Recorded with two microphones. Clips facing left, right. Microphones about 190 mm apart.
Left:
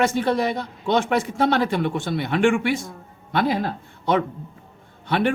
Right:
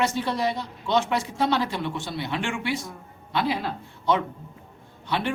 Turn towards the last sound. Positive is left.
turn(degrees=55)  # may be behind; listen again after turning